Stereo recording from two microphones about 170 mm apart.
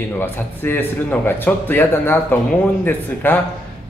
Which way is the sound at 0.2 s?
15° left (ahead or behind).